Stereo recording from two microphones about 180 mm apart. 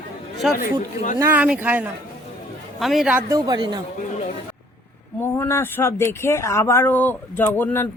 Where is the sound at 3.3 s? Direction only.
20° right (ahead or behind).